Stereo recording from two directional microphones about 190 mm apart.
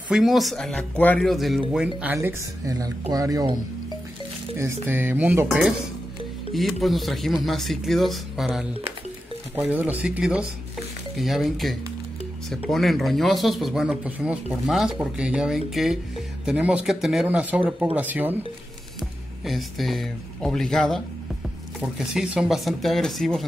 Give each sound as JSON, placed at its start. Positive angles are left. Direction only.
{"t": 0.1, "sound": "speech", "side_deg": 0}
{"t": 4.8, "sound": "speech", "side_deg": -10}